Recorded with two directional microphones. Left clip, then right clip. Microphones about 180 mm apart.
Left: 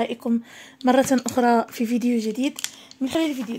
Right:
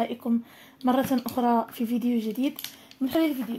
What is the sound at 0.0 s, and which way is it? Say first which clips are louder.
Speech: left 3 dB; 30° left (ahead or behind).